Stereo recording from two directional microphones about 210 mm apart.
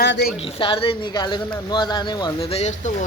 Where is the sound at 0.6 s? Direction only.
25° left (ahead or behind).